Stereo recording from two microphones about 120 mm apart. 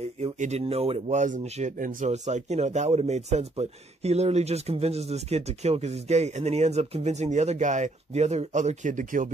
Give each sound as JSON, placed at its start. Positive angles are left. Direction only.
{"t": 0.2, "sound": "speech", "side_deg": -65}